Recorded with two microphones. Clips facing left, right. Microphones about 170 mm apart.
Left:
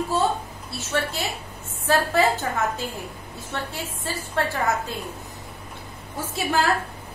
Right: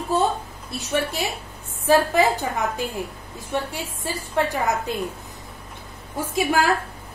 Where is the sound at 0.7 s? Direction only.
15° right (ahead or behind).